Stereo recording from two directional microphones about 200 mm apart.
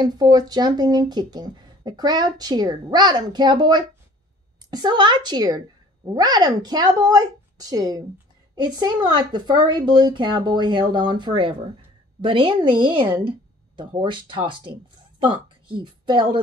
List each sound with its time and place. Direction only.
0.0 s speech: 20° right (ahead or behind)